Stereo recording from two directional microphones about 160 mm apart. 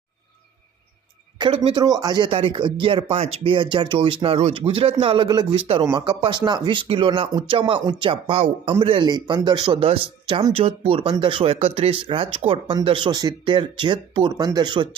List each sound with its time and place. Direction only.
1.4 s speech: 35° right (ahead or behind)
1.8 s speech: 25° right (ahead or behind)
5.8 s speech: 25° right (ahead or behind)